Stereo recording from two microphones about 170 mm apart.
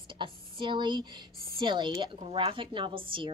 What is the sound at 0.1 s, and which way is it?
A woman's voice, 30° right (ahead or behind).